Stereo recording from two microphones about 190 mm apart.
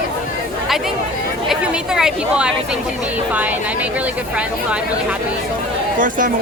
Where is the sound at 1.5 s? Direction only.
5° right (ahead or behind).